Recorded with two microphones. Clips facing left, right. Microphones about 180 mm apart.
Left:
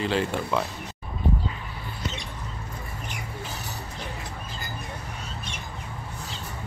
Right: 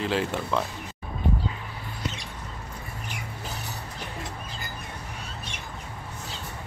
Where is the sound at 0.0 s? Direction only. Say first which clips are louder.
Left 1 dB; centre (ahead or behind).